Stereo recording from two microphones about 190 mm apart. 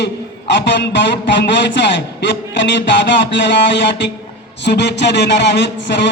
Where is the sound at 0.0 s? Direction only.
65° left (ahead or behind).